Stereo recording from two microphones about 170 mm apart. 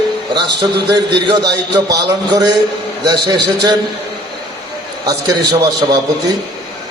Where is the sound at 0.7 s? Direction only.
80° right.